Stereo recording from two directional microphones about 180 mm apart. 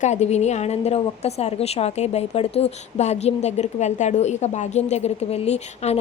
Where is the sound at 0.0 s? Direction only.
40° left (ahead or behind).